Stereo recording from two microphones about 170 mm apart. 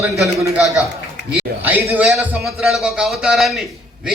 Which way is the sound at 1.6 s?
10° right (ahead or behind).